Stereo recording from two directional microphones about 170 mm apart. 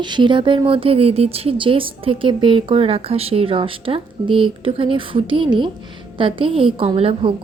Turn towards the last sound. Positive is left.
turn(degrees=-30)  # may be behind; listen again after turning